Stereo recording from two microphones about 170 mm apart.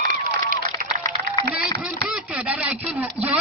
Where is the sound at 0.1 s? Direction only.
50° right (ahead or behind).